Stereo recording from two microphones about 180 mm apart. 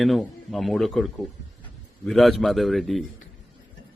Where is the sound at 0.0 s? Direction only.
Centre (ahead or behind).